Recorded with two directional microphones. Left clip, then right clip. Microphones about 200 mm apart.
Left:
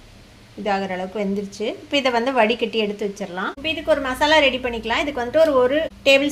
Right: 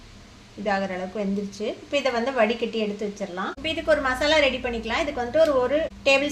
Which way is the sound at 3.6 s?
15° left (ahead or behind).